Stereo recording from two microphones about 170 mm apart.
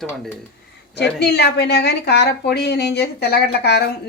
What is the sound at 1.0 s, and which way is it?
Speech, 75° left (ahead or behind).